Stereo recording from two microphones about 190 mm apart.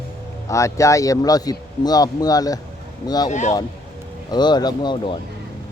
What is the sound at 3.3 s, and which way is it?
Speech, 40° left (ahead or behind).